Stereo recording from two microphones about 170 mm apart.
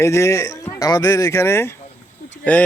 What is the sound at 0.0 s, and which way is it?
Speech, 15° left (ahead or behind).